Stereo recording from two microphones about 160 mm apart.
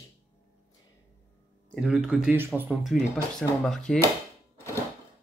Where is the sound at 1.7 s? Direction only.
5° right (ahead or behind).